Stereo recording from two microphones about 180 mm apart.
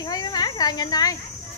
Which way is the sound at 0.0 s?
20° left (ahead or behind).